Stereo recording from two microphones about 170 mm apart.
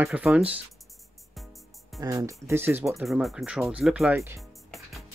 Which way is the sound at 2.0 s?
20° right (ahead or behind).